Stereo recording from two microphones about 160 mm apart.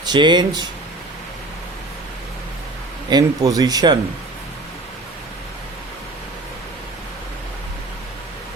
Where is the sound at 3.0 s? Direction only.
25° right (ahead or behind).